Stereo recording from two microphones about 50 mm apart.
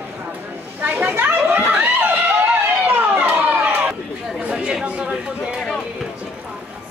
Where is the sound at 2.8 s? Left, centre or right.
Right.